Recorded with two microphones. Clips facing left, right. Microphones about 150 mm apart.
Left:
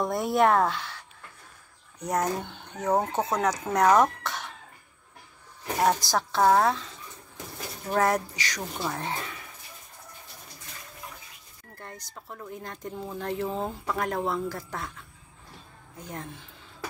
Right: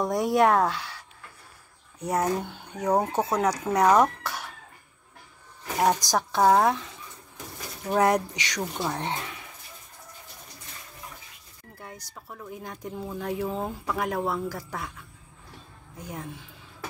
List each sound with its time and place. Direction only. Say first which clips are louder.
0.0 s speech: right 1 dB; 15° right (ahead or behind)
6.1 s speech: right 2 dB; 10° right (ahead or behind)
11.7 s speech: even; 10° right (ahead or behind)
16.0 s speech: right 1 dB; 10° right (ahead or behind)